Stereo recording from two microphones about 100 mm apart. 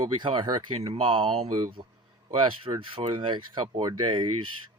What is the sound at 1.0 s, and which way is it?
Speech, 60° right (ahead or behind).